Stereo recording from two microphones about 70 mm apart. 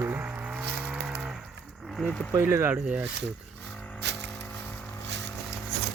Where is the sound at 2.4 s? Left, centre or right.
Right.